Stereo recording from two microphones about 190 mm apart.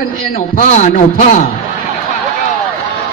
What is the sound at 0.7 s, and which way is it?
Speech, 40° left (ahead or behind).